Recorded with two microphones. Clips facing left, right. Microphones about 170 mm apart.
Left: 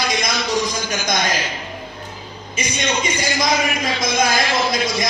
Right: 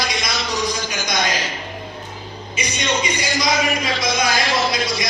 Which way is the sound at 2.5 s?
45° left (ahead or behind).